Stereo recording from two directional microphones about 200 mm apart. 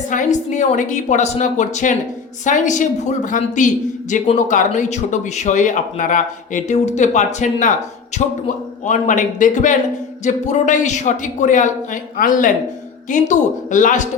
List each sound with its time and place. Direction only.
0.1 s speech: 40° left (ahead or behind)